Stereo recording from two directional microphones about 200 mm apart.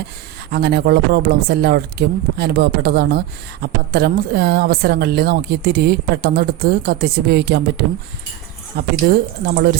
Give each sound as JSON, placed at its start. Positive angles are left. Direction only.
{"t": 0.5, "sound": "speech", "side_deg": -55}